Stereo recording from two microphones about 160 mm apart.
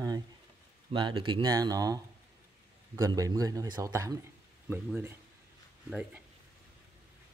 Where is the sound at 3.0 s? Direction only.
20° right (ahead or behind); by 6.2 s 5° right (ahead or behind).